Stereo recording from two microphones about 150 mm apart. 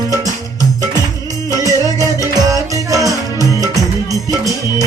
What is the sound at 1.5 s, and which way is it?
Music, 20° right (ahead or behind).